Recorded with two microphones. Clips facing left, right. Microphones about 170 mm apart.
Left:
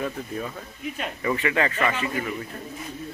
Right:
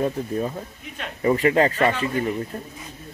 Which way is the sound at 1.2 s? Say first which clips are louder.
Right 6 dB; 40° right (ahead or behind).